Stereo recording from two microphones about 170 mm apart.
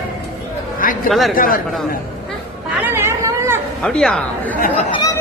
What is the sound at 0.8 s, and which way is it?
Speech, 55° left (ahead or behind).